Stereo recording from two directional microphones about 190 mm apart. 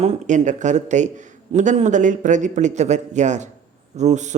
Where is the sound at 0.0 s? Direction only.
35° right (ahead or behind).